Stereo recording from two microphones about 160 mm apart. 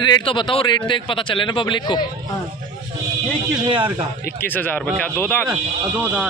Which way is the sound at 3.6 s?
30° right (ahead or behind).